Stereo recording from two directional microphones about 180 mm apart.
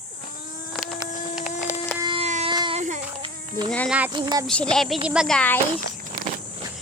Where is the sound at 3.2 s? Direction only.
25° right (ahead or behind).